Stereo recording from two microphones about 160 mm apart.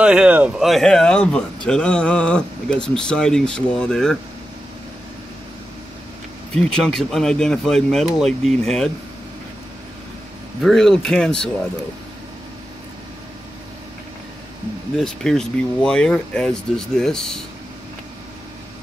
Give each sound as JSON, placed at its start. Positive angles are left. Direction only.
{"t": 0.0, "sound": "speech", "side_deg": -5}
{"t": 6.5, "sound": "speech", "side_deg": 5}
{"t": 10.6, "sound": "speech", "side_deg": 0}
{"t": 15.0, "sound": "speech", "side_deg": 5}